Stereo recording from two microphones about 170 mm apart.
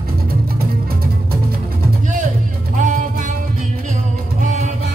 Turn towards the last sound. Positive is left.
turn(degrees=-50)  # may be behind; listen again after turning